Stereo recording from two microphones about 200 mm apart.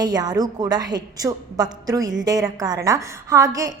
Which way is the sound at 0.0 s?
20° right (ahead or behind).